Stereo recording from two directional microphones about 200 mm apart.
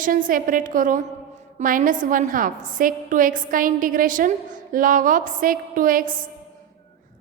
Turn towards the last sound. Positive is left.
turn(degrees=-45)  # may be behind; listen again after turning